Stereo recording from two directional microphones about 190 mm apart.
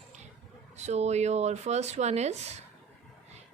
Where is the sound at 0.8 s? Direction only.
35° right (ahead or behind).